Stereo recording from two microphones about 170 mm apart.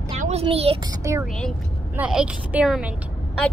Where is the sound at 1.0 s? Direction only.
15° right (ahead or behind).